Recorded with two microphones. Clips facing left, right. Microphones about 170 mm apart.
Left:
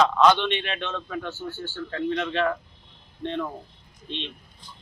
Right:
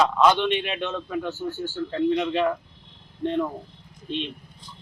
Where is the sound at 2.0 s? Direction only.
5° right (ahead or behind).